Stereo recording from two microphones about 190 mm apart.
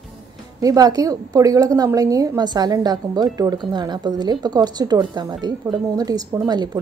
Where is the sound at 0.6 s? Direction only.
20° right (ahead or behind).